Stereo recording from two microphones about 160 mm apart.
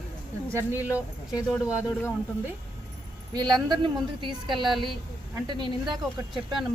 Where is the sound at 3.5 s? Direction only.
30° right (ahead or behind).